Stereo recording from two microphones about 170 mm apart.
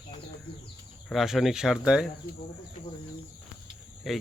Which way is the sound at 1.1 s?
Centre (ahead or behind).